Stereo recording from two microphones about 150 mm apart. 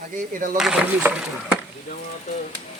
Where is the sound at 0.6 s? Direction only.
5° right (ahead or behind).